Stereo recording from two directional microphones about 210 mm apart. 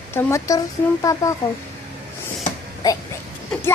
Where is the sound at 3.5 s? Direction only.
10° left (ahead or behind).